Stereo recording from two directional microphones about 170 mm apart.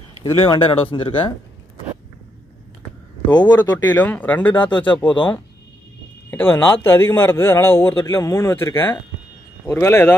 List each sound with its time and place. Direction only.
0.2 s speech: 30° left (ahead or behind)
3.3 s speech: 25° left (ahead or behind)
3.7 s a man's voice: 10° left (ahead or behind)
4.6 s speech: 30° left (ahead or behind)
6.3 s a man's voice: 10° left (ahead or behind)